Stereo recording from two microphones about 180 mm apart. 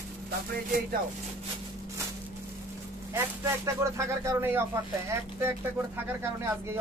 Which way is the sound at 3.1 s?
15° right (ahead or behind).